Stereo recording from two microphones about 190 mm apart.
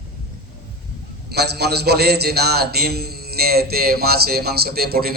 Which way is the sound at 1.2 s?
60° right (ahead or behind).